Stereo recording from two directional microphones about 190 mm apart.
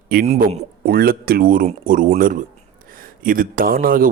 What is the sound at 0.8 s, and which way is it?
A man's voice, 55° right (ahead or behind).